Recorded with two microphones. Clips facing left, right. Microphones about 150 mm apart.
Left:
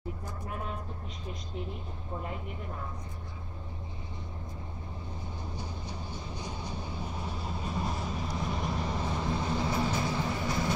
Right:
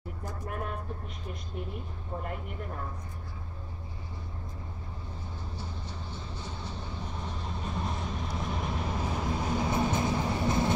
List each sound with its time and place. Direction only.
5.6 s vehicle: 15° left (ahead or behind); by 9.7 s 10° right (ahead or behind)
9.7 s vehicle: 20° right (ahead or behind)